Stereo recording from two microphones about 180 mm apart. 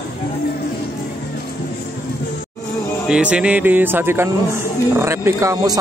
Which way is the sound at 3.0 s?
5° right (ahead or behind).